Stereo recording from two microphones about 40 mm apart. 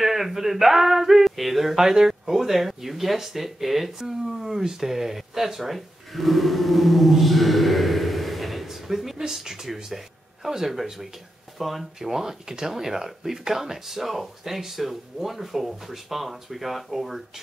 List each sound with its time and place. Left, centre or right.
0.0 s male singing: centre
9.2 s speech: centre